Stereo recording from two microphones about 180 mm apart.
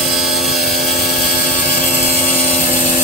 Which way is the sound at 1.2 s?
50° left (ahead or behind).